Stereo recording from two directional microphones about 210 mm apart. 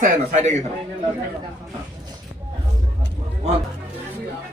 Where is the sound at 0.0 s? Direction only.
35° right (ahead or behind).